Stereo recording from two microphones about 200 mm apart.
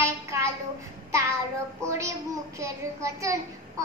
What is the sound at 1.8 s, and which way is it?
A child's voice, 15° right (ahead or behind).